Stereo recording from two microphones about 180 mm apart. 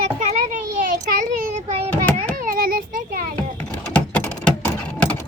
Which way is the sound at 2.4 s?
50° right (ahead or behind).